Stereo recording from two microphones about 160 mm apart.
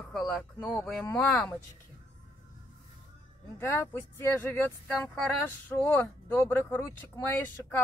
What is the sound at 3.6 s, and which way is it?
Speech, 15° left (ahead or behind).